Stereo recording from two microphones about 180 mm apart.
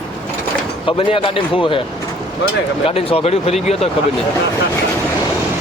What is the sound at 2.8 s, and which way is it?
Speech, 30° left (ahead or behind).